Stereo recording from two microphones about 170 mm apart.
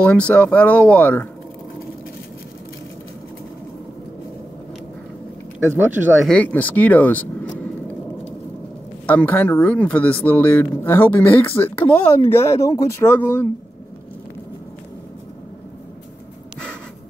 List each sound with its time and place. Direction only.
0.0 s speech: 10° left (ahead or behind)
5.6 s speech: 15° right (ahead or behind)
6.2 s speech: 10° left (ahead or behind)
9.0 s speech: 10° left (ahead or behind)